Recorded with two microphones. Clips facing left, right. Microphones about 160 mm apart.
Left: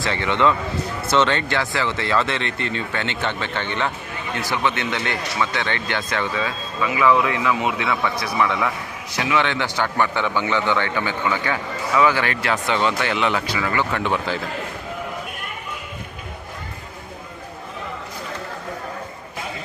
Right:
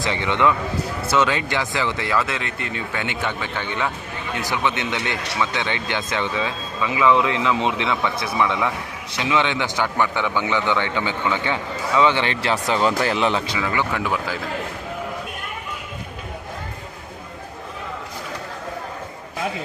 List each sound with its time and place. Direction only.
0.0 s a man's voice: 15° right (ahead or behind)
13.6 s speech: 10° right (ahead or behind)